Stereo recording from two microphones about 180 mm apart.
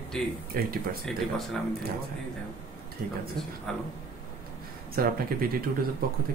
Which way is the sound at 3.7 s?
5° left (ahead or behind).